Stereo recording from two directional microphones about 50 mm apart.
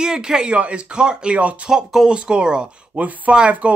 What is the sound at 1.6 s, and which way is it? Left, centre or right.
Speech, centre.